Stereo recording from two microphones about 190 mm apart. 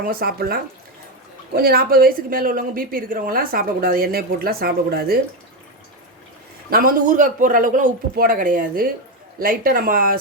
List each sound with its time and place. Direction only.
0.0 s speech: 50° right (ahead or behind)
6.7 s speech: 50° right (ahead or behind)